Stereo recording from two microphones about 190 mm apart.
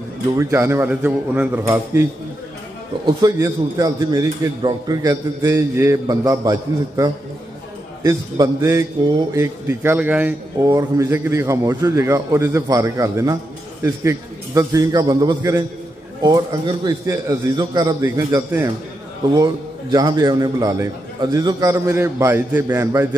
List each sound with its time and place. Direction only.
0.4 s speech: 15° right (ahead or behind)
3.2 s a man's voice: 20° right (ahead or behind)